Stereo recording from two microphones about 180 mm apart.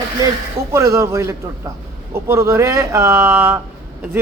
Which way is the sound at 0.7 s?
15° right (ahead or behind).